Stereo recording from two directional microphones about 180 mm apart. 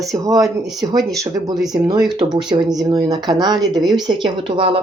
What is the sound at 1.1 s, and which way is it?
Speech, 20° right (ahead or behind).